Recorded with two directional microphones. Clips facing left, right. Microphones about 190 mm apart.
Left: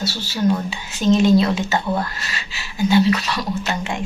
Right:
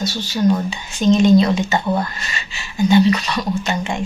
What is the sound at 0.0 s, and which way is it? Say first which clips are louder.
Speech: right 3 dB; 5° left (ahead or behind).